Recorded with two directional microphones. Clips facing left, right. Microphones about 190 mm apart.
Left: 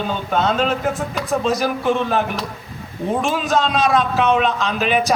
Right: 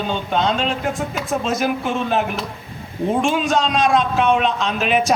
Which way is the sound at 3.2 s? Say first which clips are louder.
Right 1 dB; centre (ahead or behind).